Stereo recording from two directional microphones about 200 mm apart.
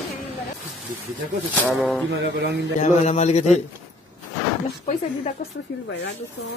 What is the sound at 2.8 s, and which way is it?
Speech, 35° left (ahead or behind).